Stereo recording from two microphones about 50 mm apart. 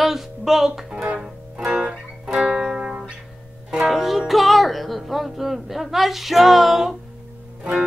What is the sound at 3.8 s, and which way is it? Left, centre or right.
Music, centre.